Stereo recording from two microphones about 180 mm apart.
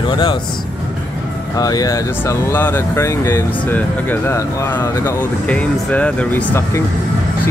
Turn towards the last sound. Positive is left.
turn(degrees=10)  # may be behind; listen again after turning